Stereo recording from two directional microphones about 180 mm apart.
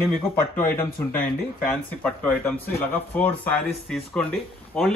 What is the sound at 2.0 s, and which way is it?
Speech, 10° left (ahead or behind).